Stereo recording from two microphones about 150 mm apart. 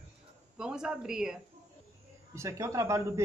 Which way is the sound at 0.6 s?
5° right (ahead or behind).